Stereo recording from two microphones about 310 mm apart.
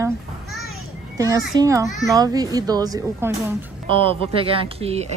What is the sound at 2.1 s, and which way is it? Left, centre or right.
Speech, centre.